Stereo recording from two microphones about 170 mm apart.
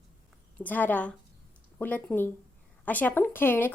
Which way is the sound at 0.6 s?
10° left (ahead or behind).